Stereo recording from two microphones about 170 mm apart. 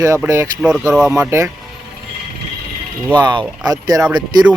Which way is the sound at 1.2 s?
15° right (ahead or behind).